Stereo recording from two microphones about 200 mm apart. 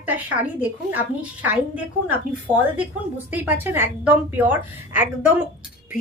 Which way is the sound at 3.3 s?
10° right (ahead or behind).